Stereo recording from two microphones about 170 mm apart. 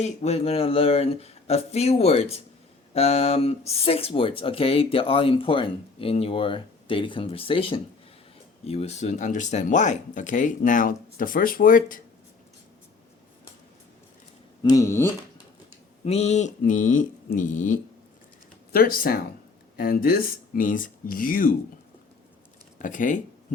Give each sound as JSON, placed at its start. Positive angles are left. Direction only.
{"t": 0.0, "sound": "speech", "side_deg": 40}
{"t": 14.6, "sound": "speech", "side_deg": 20}
{"t": 16.0, "sound": "speech", "side_deg": 40}
{"t": 18.7, "sound": "speech", "side_deg": 60}
{"t": 22.8, "sound": "speech", "side_deg": 50}